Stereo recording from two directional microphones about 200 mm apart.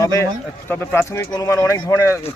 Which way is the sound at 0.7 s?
10° left (ahead or behind).